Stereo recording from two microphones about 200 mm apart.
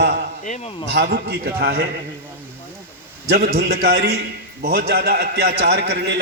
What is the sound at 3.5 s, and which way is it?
A man's voice, 50° right (ahead or behind).